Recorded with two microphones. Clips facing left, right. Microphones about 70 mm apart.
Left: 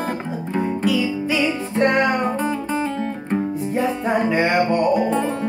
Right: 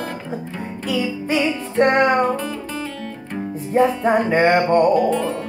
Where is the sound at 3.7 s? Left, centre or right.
Right.